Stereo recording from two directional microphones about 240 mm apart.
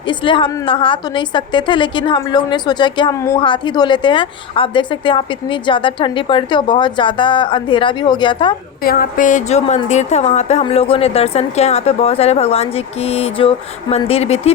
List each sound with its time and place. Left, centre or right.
0.1 s a woman's voice: centre
8.8 s a woman's voice: left